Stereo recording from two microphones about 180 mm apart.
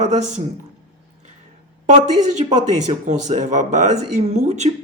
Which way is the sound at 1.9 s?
40° right (ahead or behind).